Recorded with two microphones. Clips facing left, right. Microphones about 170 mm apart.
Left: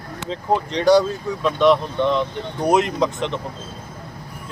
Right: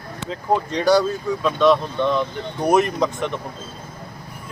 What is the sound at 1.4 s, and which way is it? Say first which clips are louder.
A man's voice: left 1 dB; 15° left (ahead or behind).